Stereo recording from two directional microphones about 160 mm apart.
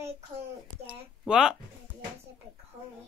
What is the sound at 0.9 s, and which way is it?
Speech, 5° right (ahead or behind).